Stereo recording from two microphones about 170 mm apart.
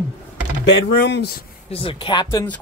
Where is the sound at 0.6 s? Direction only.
90° left.